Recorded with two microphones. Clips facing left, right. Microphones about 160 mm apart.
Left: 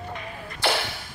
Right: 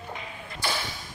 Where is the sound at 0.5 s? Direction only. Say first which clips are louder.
Left 6 dB; 65° left (ahead or behind).